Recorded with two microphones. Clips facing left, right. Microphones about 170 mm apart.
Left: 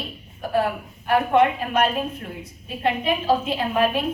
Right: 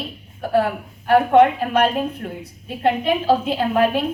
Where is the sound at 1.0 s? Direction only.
60° right (ahead or behind).